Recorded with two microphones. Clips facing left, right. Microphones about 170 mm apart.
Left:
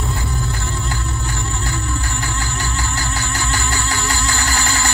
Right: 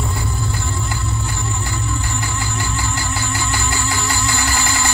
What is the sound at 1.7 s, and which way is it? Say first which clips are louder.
Music: even; 15° right (ahead or behind).